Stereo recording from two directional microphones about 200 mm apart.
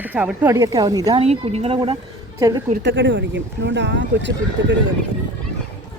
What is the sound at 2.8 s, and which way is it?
Speech, 65° right (ahead or behind).